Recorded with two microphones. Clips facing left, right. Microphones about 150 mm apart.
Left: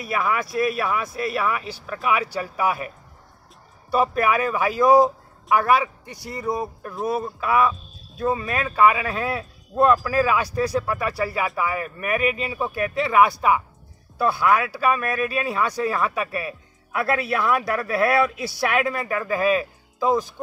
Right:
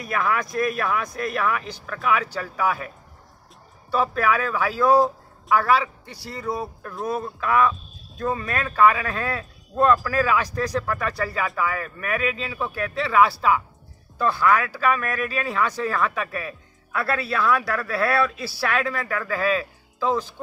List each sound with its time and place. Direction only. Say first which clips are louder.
0.0 s speech: even; 5° left (ahead or behind)
3.9 s speech: left 2 dB; 15° left (ahead or behind)